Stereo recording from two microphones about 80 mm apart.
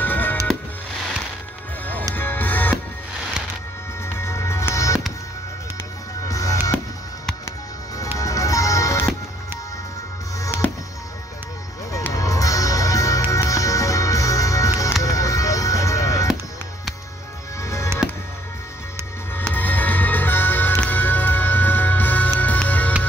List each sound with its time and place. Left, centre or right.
0.0 s music: left
2.1 s music: left
4.0 s music: left
6.2 s music: left
8.2 s music: left
10.4 s music: left
12.1 s music: left
17.6 s music: left
19.5 s music: left